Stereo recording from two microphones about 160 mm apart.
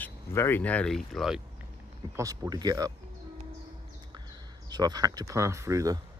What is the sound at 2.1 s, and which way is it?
Speech, 20° right (ahead or behind).